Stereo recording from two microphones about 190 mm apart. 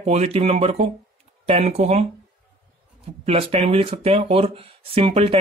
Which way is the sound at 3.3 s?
30° right (ahead or behind).